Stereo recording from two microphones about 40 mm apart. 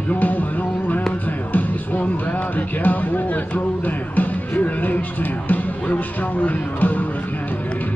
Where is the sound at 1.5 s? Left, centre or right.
Left.